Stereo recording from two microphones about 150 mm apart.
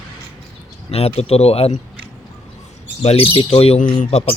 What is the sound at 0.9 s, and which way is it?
Speech, 45° left (ahead or behind).